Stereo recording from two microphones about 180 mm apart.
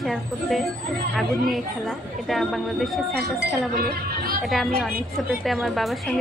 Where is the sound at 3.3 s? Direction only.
55° right (ahead or behind).